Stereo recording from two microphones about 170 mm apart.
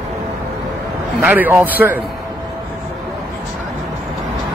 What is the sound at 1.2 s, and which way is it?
Speech, 10° right (ahead or behind).